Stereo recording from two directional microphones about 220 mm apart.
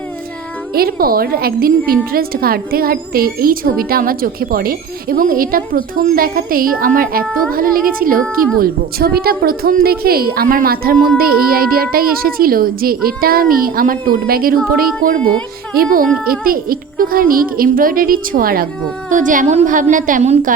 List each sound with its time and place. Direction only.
0.8 s a woman's voice: 40° right (ahead or behind)
15.7 s speech: 40° right (ahead or behind)